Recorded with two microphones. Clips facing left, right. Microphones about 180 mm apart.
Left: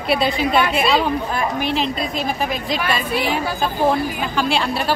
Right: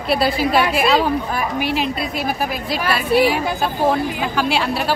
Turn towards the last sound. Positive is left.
turn(degrees=-5)  # may be behind; listen again after turning